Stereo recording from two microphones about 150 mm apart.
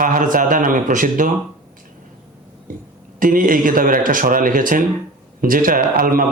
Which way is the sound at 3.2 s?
65° right (ahead or behind).